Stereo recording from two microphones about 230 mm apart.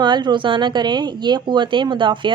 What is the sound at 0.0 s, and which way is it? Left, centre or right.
A woman's voice, centre.